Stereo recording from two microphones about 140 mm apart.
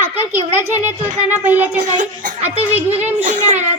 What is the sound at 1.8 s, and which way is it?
A child's voice, 65° right (ahead or behind).